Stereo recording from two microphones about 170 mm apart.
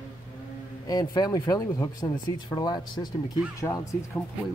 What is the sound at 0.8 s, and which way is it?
Speech, 25° left (ahead or behind).